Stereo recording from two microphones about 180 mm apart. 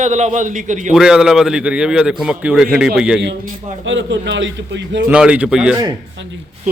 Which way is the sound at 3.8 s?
90° right.